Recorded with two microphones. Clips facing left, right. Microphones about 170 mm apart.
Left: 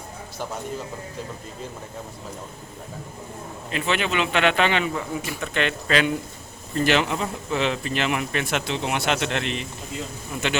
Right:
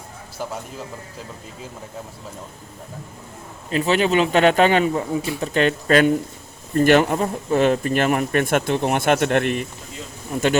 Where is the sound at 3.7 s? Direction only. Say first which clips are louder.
Right 7 dB; 35° right (ahead or behind).